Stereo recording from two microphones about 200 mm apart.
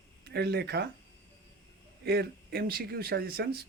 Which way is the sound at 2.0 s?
55° right (ahead or behind).